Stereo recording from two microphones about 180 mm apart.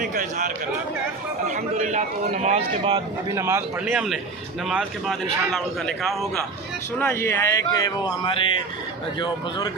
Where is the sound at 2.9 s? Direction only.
15° right (ahead or behind).